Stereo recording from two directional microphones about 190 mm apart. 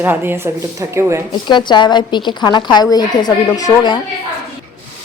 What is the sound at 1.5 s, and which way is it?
A woman's voice, 25° left (ahead or behind).